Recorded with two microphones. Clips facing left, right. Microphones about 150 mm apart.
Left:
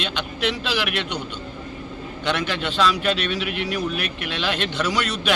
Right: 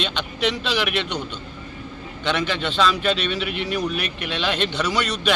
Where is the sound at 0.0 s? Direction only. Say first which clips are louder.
Right 1 dB; 5° left (ahead or behind).